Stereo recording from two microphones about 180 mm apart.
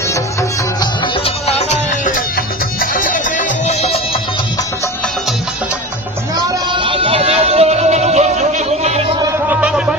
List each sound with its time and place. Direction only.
0.8 s music: 30° left (ahead or behind)
6.5 s music: 25° right (ahead or behind)
9.5 s music: 5° right (ahead or behind)